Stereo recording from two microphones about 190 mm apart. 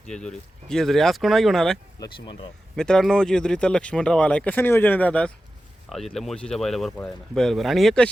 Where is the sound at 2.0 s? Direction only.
25° left (ahead or behind).